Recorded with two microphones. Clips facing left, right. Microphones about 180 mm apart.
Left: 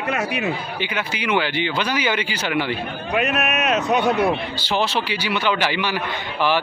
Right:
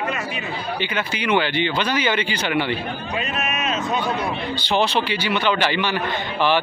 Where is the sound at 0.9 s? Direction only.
10° left (ahead or behind).